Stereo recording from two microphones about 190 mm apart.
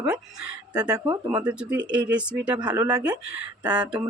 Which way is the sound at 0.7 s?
20° right (ahead or behind).